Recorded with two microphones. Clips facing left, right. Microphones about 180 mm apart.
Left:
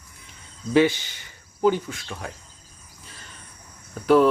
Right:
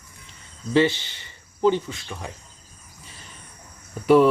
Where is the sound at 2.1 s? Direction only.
5° right (ahead or behind).